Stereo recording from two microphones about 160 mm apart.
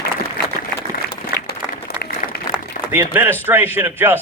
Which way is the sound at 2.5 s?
10° right (ahead or behind).